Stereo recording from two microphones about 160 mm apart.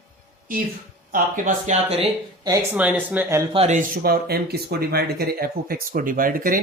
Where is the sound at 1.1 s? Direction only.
55° right (ahead or behind).